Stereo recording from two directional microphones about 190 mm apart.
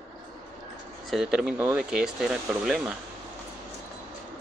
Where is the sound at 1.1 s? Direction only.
Centre (ahead or behind).